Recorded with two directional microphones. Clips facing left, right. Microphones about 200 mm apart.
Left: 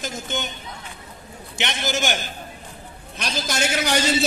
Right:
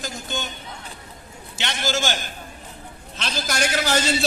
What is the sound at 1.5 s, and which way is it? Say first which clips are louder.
Speech: even; 20° left (ahead or behind).